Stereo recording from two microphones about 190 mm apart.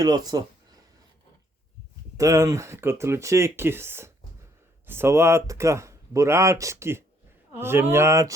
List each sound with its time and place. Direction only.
0.0 s speech: 20° right (ahead or behind)
2.1 s speech: 15° right (ahead or behind)